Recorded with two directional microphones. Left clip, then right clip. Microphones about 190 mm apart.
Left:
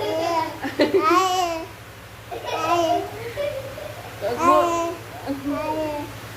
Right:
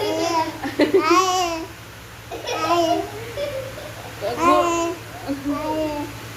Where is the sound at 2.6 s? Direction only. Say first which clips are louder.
Right 1 dB; centre (ahead or behind).